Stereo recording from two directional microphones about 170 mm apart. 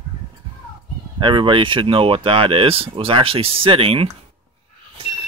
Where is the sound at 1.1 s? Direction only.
30° right (ahead or behind).